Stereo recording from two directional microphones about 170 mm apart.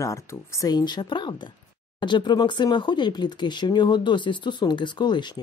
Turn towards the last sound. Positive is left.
turn(degrees=25)  # may be behind; listen again after turning